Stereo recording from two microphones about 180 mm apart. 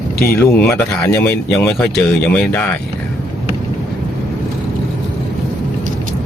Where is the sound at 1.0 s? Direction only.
15° left (ahead or behind).